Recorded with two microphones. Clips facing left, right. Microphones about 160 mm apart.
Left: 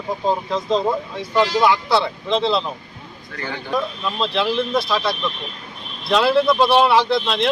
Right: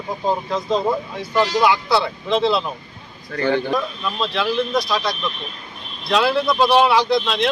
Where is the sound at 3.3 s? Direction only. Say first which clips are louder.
Right 9 dB; 35° right (ahead or behind).